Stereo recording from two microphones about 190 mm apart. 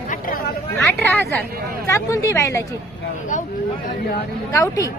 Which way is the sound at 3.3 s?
40° left (ahead or behind).